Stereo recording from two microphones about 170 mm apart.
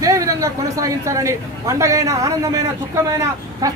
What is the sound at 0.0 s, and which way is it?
Speech, 20° right (ahead or behind).